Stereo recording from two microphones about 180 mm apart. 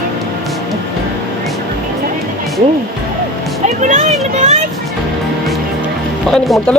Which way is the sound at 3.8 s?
40° right (ahead or behind).